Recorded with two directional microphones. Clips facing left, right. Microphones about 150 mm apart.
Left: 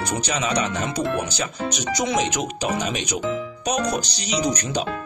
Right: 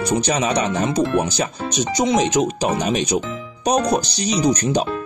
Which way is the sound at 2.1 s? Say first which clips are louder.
Right 6 dB; 30° right (ahead or behind).